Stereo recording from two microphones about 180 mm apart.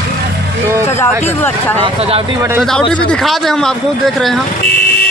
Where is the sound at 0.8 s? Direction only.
15° left (ahead or behind).